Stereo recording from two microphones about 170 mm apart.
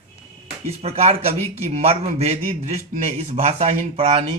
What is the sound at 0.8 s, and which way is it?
A man's voice, 40° right (ahead or behind).